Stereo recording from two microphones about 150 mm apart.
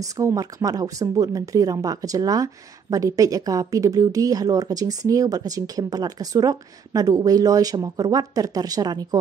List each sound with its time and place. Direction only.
0.0 s speech: 20° right (ahead or behind)